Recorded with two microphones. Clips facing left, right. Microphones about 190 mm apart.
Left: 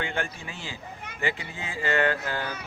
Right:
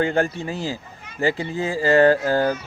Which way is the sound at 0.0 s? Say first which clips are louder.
Right 11 dB; 40° right (ahead or behind).